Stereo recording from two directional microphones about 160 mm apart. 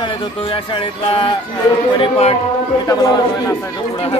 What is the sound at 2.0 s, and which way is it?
Speech, 40° left (ahead or behind).